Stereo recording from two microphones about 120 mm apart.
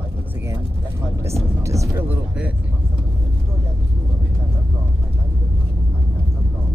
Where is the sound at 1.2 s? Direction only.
25° right (ahead or behind).